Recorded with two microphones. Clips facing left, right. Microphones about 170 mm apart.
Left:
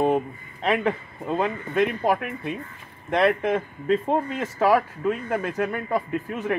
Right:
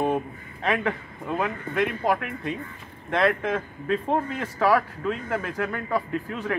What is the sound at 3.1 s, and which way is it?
A man's voice, 15° left (ahead or behind).